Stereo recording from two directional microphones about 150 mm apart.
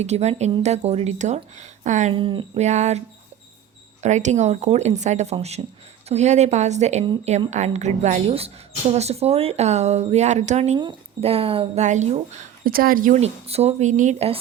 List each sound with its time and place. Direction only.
0.0 s a woman's voice: 45° right (ahead or behind)
2.1 s speech: 35° right (ahead or behind)
2.6 s a woman's voice: 50° right (ahead or behind)
4.0 s a woman's voice: 50° right (ahead or behind)
12.6 s a woman's voice: 75° right (ahead or behind); by 14.3 s 50° right (ahead or behind)